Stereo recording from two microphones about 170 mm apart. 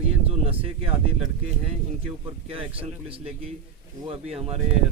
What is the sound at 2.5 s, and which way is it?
Speech, 35° right (ahead or behind).